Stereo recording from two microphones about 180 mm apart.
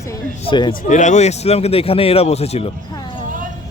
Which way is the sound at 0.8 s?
40° left (ahead or behind).